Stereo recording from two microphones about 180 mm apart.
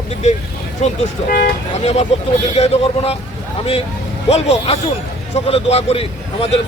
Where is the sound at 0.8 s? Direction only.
35° left (ahead or behind).